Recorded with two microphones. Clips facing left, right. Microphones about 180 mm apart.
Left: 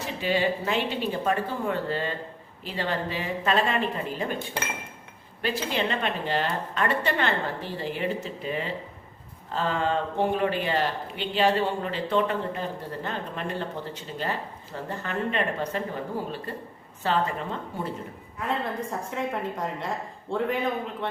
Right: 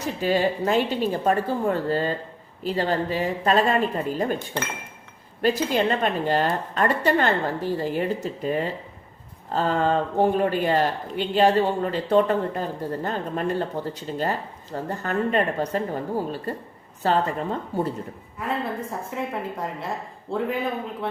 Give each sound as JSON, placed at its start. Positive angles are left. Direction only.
{"t": 0.2, "sound": "speech", "side_deg": -40}
{"t": 5.4, "sound": "a woman's voice", "side_deg": -45}
{"t": 18.3, "sound": "a woman's voice", "side_deg": -5}